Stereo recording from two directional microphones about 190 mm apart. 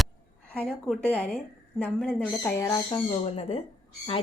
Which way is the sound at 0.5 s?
5° left (ahead or behind).